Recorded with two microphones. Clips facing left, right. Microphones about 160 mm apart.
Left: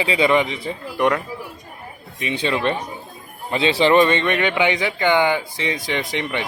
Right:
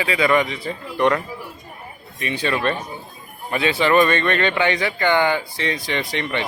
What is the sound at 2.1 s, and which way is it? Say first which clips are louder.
A man's voice: left 1 dB; 20° left (ahead or behind).